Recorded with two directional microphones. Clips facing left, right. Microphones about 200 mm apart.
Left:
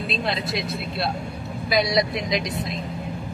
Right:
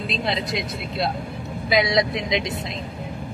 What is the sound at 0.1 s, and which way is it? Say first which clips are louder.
A woman's voice: right 1 dB; 20° right (ahead or behind).